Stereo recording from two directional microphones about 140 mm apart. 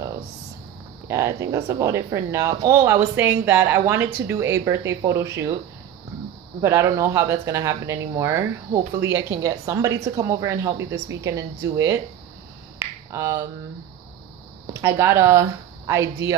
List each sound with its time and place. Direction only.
1.0 s speech: 20° right (ahead or behind)
6.6 s speech: 20° right (ahead or behind)
12.7 s finger snapping: 20° right (ahead or behind)
14.7 s speech: 20° right (ahead or behind)